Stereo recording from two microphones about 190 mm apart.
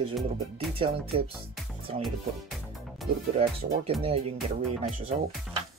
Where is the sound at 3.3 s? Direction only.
30° right (ahead or behind).